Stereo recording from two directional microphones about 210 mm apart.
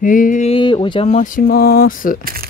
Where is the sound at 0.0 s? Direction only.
40° left (ahead or behind).